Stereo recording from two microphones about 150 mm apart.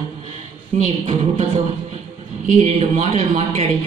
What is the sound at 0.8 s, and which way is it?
Speech, 45° right (ahead or behind).